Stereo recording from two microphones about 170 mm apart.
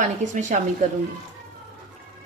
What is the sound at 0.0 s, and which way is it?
Speech, 45° right (ahead or behind).